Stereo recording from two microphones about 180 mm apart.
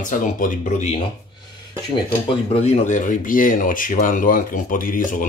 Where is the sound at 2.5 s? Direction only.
40° left (ahead or behind).